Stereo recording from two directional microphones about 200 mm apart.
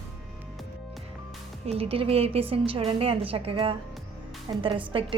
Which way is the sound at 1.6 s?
30° right (ahead or behind).